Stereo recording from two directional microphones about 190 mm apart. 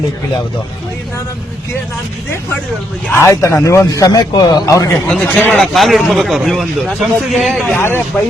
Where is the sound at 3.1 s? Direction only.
15° left (ahead or behind).